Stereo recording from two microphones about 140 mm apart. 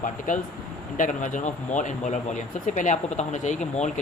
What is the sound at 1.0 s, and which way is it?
Speech, 65° left (ahead or behind).